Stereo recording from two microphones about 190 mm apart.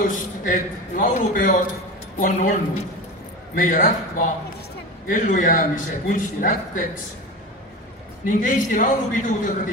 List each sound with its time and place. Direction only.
0.0 s a man's voice: 45° left (ahead or behind)
3.5 s a man's voice: 40° left (ahead or behind)
8.3 s a man's voice: 45° left (ahead or behind)